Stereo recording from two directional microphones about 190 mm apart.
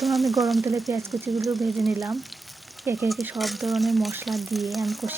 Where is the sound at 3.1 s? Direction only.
Centre (ahead or behind).